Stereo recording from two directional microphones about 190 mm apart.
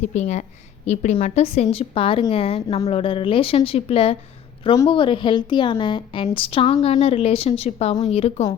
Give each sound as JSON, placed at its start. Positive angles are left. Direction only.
{"t": 0.0, "sound": "a woman's voice", "side_deg": 35}